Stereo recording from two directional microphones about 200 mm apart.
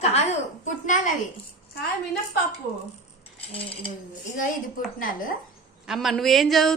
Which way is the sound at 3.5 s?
30° left (ahead or behind).